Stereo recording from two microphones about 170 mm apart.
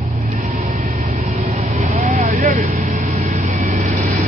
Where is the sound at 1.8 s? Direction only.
45° right (ahead or behind).